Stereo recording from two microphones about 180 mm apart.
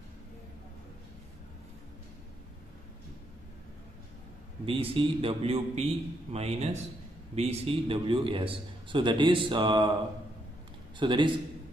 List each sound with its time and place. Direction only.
4.6 s a man's voice: 30° right (ahead or behind)
11.0 s a man's voice: 25° right (ahead or behind)